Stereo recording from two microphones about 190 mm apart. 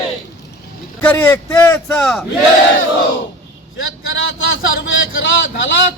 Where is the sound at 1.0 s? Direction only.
10° left (ahead or behind).